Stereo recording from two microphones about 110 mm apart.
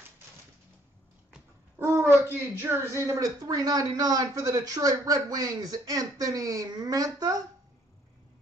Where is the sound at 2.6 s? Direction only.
20° right (ahead or behind).